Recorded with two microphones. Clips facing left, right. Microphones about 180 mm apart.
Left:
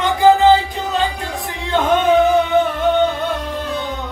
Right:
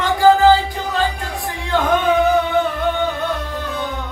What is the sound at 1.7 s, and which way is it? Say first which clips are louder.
Music: left 2 dB; 20° left (ahead or behind).